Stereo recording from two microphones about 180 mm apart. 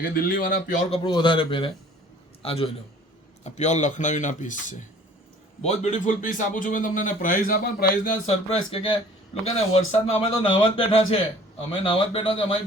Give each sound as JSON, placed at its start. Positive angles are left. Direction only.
{"t": 0.0, "sound": "a man's voice", "side_deg": 55}
{"t": 0.9, "sound": "a man's voice", "side_deg": 25}
{"t": 8.3, "sound": "a man's voice", "side_deg": 35}